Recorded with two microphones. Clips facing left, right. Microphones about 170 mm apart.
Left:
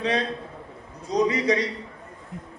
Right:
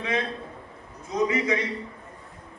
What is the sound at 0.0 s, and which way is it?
A man's voice, 35° left (ahead or behind).